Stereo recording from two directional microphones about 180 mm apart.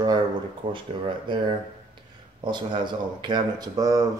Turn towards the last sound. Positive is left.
turn(degrees=-20)  # may be behind; listen again after turning